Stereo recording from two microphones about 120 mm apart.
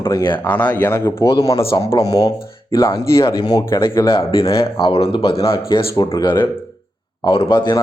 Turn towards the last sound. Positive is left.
turn(degrees=40)  # may be behind; listen again after turning